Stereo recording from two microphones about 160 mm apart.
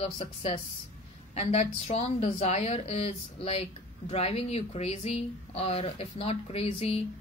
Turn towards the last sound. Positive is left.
turn(degrees=40)  # may be behind; listen again after turning